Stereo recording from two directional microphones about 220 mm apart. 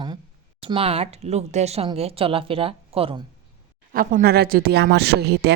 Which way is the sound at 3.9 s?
40° right (ahead or behind).